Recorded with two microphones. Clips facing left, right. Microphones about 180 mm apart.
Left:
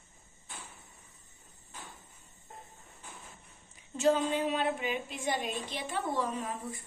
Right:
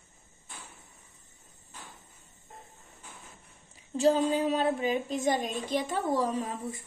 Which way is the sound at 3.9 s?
35° right (ahead or behind).